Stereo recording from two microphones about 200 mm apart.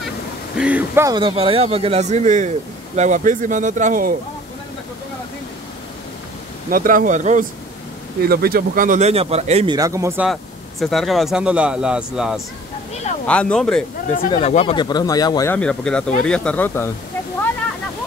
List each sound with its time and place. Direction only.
0.6 s speech: 5° right (ahead or behind); by 4.1 s 40° right (ahead or behind)
6.7 s speech: 45° right (ahead or behind)
8.2 s speech: 50° right (ahead or behind); by 9.8 s 30° right (ahead or behind)
9.8 s speech: 15° right (ahead or behind)
10.2 s speech: centre (ahead or behind)
14.3 s speech: 30° left (ahead or behind)
15.5 s speech: 5° left (ahead or behind)